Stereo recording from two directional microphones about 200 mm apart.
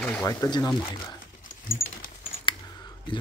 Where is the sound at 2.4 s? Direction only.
20° left (ahead or behind).